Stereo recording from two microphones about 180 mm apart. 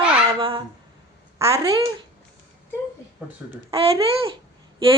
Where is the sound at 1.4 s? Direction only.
15° right (ahead or behind).